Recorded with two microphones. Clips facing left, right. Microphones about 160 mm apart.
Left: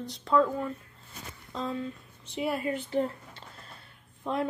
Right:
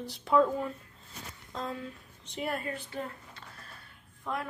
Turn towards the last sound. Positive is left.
turn(degrees=25)  # may be behind; listen again after turning